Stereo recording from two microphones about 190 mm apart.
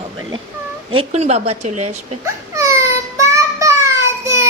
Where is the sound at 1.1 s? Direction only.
35° right (ahead or behind).